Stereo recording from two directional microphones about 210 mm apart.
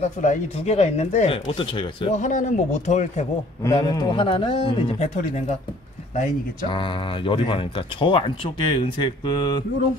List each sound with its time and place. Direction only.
0.0 s speech: 35° left (ahead or behind)
3.6 s speech: 20° left (ahead or behind)